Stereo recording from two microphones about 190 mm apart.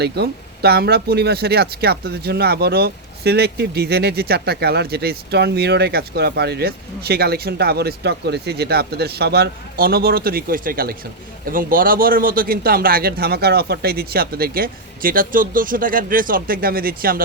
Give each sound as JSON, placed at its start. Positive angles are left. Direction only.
{"t": 0.0, "sound": "a man's voice", "side_deg": -60}